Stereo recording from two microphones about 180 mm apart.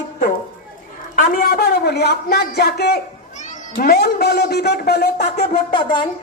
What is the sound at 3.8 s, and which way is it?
A man's voice, 60° left (ahead or behind).